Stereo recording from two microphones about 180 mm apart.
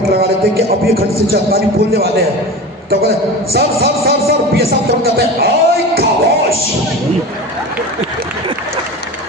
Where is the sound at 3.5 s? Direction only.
60° right (ahead or behind).